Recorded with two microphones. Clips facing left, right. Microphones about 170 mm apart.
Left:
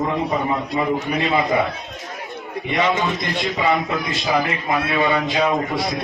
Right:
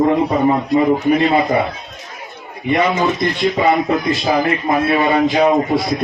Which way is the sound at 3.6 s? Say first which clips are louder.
Right 5 dB; 45° right (ahead or behind).